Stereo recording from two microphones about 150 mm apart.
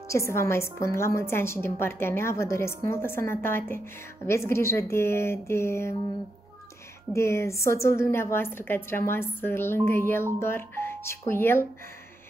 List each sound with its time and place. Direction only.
0.1 s a woman's voice: 20° left (ahead or behind)
7.2 s a woman's voice: 20° left (ahead or behind)